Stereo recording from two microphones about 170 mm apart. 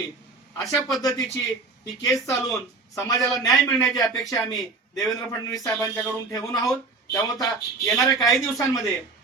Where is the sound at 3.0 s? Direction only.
20° left (ahead or behind).